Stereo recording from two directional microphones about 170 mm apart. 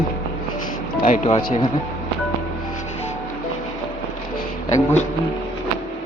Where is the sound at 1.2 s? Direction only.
25° left (ahead or behind).